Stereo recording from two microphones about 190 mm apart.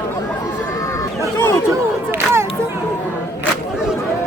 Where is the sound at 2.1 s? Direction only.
15° right (ahead or behind).